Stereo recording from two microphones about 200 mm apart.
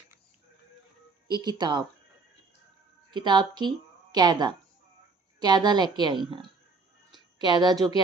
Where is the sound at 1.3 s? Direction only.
20° right (ahead or behind).